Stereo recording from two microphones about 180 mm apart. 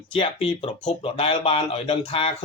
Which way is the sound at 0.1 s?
30° left (ahead or behind).